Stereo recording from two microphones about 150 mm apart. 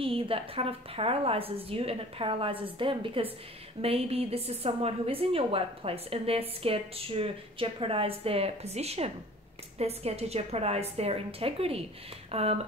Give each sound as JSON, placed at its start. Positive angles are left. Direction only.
{"t": 0.0, "sound": "a woman's voice", "side_deg": -40}